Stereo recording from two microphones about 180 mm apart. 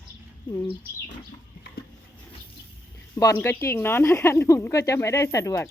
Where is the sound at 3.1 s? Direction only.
15° left (ahead or behind).